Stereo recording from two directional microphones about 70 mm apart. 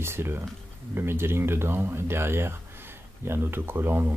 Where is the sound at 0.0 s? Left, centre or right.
Right.